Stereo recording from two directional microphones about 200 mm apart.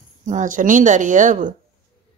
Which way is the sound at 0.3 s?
40° right (ahead or behind).